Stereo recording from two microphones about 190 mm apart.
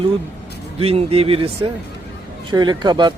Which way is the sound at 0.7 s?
30° right (ahead or behind).